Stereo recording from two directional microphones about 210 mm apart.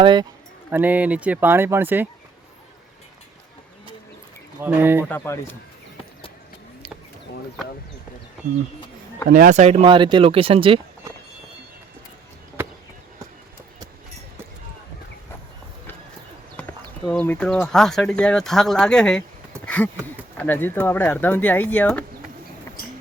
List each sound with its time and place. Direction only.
0.0 s speech: 20° right (ahead or behind)
0.7 s speech: 10° right (ahead or behind)
4.6 s speech: 10° right (ahead or behind)
5.0 s speech: 10° left (ahead or behind)
9.3 s speech: 35° right (ahead or behind)
17.1 s speech: 5° left (ahead or behind)
19.6 s a sound: 5° left (ahead or behind)
20.3 s speech: 10° left (ahead or behind)